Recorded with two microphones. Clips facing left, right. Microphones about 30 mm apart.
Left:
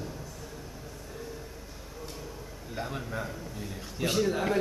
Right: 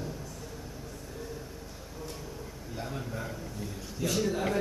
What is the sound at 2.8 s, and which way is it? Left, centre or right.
A man's voice, left.